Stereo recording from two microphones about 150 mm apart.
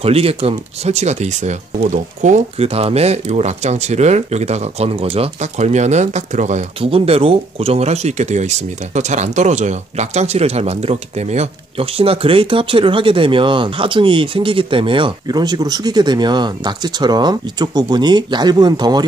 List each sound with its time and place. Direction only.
0.0 s speech: 40° right (ahead or behind)
6.8 s speech: 40° right (ahead or behind)